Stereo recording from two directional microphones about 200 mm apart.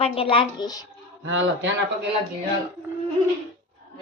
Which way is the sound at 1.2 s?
65° right (ahead or behind).